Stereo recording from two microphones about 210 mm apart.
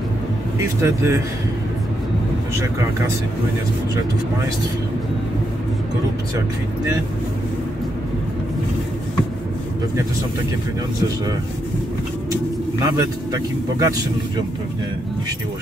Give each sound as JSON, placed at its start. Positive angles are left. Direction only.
{"t": 0.8, "sound": "speech", "side_deg": -10}
{"t": 12.8, "sound": "speech", "side_deg": -15}